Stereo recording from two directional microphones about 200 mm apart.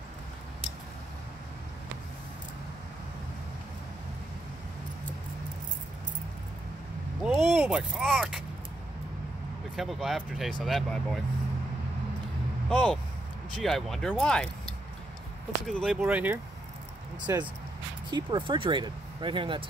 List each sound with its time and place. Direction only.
7.2 s a sound: centre (ahead or behind)
9.8 s speech: centre (ahead or behind)
12.6 s speech: 5° left (ahead or behind)
15.6 s speech: centre (ahead or behind); by 19.6 s 25° right (ahead or behind)